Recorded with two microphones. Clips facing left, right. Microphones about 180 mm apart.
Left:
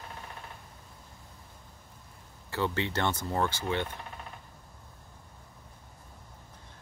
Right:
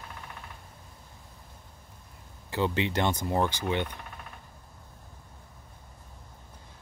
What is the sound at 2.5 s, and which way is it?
Speech, 15° right (ahead or behind).